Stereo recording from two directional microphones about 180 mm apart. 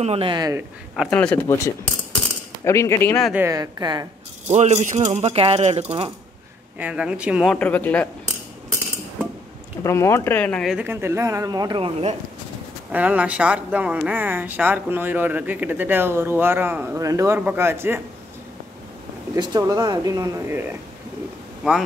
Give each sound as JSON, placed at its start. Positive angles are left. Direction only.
{"t": 0.0, "sound": "speech", "side_deg": -30}
{"t": 0.9, "sound": "speech", "side_deg": 5}
{"t": 3.3, "sound": "speech", "side_deg": -15}
{"t": 4.5, "sound": "speech", "side_deg": -40}
{"t": 6.8, "sound": "speech", "side_deg": -5}
{"t": 7.5, "sound": "speech", "side_deg": 10}
{"t": 9.8, "sound": "speech", "side_deg": 15}
{"t": 10.8, "sound": "speech", "side_deg": -10}
{"t": 12.9, "sound": "speech", "side_deg": -10}
{"t": 19.3, "sound": "speech", "side_deg": -20}
{"t": 21.6, "sound": "speech", "side_deg": -5}